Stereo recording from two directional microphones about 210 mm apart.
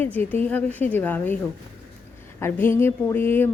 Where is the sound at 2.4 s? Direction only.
10° left (ahead or behind).